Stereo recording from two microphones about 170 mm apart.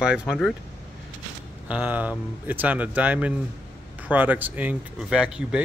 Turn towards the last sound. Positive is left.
turn(degrees=-5)  # may be behind; listen again after turning